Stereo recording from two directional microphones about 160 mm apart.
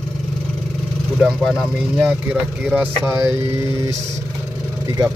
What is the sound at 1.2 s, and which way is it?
Speech, centre (ahead or behind).